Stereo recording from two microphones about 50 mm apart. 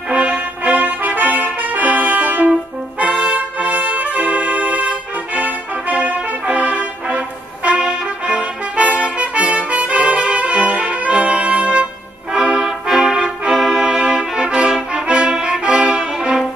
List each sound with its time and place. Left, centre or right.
0.1 s trumpet: right
3.0 s brass instrument: right